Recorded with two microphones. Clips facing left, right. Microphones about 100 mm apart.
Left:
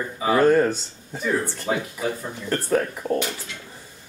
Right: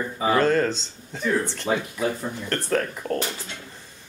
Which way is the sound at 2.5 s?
10° left (ahead or behind).